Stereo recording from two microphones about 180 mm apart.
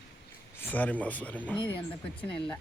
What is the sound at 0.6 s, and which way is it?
Speech, 10° left (ahead or behind).